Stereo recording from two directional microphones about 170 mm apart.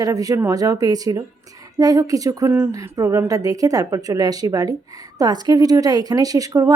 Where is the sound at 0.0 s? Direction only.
20° right (ahead or behind).